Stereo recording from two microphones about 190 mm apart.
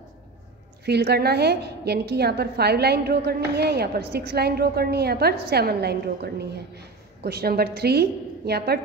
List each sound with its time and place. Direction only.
0.8 s a woman's voice: 60° right (ahead or behind)